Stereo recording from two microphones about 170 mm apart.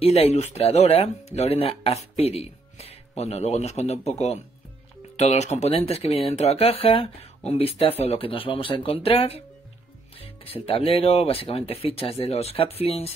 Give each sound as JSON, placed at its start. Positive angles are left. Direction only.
{"t": 0.0, "sound": "speech", "side_deg": 35}